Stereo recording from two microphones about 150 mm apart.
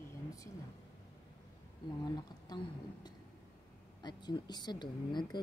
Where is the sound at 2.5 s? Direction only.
25° left (ahead or behind).